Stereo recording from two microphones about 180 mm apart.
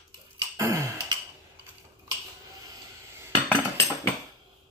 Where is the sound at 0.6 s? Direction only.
20° right (ahead or behind).